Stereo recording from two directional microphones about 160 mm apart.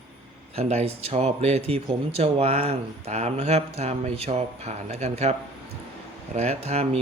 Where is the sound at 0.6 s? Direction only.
40° right (ahead or behind).